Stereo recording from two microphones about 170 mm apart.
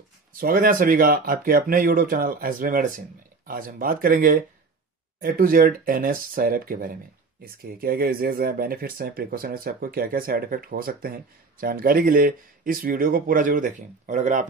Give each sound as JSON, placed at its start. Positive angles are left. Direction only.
{"t": 0.3, "sound": "speech", "side_deg": -55}